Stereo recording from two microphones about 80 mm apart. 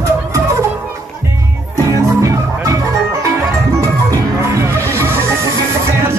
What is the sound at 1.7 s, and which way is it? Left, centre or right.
Music, right.